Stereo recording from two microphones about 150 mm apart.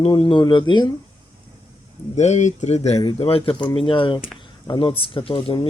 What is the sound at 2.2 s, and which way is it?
Speech, 50° left (ahead or behind).